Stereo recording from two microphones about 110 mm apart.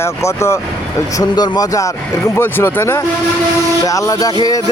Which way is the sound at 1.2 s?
40° left (ahead or behind).